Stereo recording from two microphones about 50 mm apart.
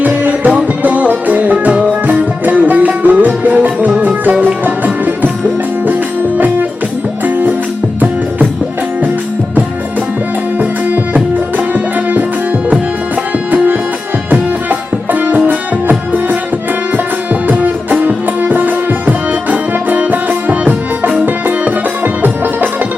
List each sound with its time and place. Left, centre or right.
0.0 s music: right
11.1 s music: right
14.3 s music: right
17.5 s music: right